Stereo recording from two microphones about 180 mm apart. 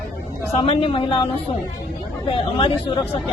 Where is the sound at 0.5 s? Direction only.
35° left (ahead or behind).